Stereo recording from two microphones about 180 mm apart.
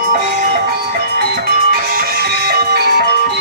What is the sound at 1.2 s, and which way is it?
Music, 60° right (ahead or behind).